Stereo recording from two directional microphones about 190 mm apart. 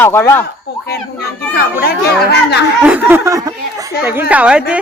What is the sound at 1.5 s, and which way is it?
Speech, 55° left (ahead or behind).